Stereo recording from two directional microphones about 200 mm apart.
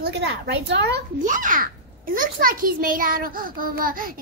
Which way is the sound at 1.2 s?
40° right (ahead or behind).